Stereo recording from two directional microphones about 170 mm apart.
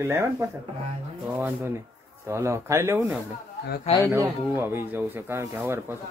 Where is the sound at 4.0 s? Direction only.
15° right (ahead or behind).